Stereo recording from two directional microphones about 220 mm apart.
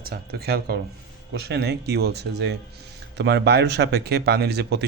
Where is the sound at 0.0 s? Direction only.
45° right (ahead or behind).